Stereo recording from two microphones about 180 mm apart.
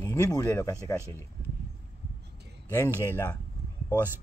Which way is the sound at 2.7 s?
15° left (ahead or behind).